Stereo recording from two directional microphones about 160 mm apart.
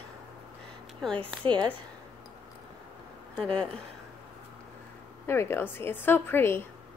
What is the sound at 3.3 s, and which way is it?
Speech, 5° left (ahead or behind).